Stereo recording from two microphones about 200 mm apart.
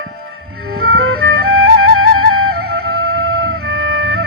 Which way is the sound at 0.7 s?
50° right (ahead or behind).